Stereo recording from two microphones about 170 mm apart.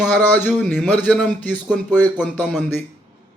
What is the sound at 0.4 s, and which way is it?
A man's voice, centre (ahead or behind).